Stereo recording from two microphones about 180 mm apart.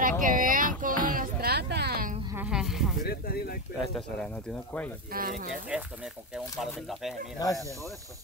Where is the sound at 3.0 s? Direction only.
55° left (ahead or behind).